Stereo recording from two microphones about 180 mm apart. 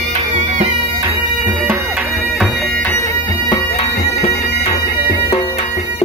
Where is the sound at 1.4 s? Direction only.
5° right (ahead or behind).